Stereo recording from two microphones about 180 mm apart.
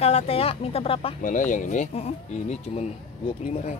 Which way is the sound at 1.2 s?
45° left (ahead or behind).